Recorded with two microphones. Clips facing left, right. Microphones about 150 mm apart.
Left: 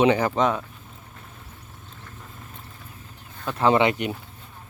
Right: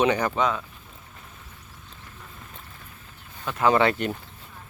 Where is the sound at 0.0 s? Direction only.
25° left (ahead or behind).